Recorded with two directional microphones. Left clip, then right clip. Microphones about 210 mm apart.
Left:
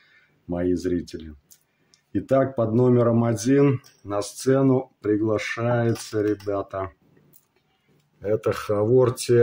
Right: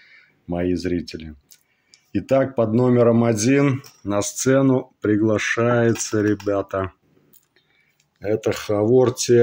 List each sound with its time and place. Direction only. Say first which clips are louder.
0.5 s speech: right 1 dB; 5° right (ahead or behind)
8.2 s speech: right 2 dB; centre (ahead or behind)